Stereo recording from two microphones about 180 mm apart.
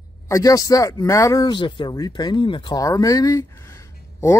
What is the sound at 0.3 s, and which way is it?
Speech, 20° left (ahead or behind).